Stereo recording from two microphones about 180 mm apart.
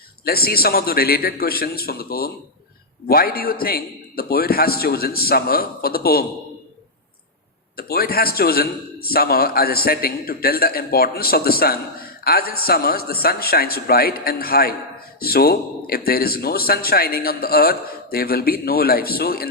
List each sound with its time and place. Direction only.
0.3 s a man's voice: 55° left (ahead or behind)
7.8 s a man's voice: 55° left (ahead or behind)